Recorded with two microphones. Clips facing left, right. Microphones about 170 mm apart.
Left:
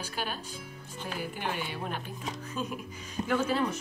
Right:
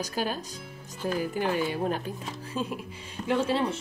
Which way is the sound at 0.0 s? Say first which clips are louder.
Right 6 dB; 40° right (ahead or behind).